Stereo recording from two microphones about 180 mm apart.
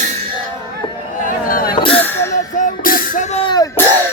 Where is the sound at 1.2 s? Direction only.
50° left (ahead or behind).